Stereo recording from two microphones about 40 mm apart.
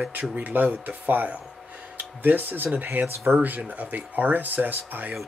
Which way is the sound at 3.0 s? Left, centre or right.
Right.